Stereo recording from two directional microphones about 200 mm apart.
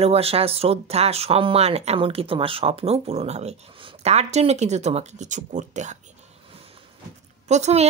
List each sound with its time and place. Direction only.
0.0 s speech: 30° right (ahead or behind)
7.4 s speech: 35° right (ahead or behind)